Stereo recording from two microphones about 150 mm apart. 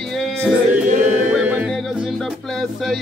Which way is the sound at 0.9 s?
55° right (ahead or behind).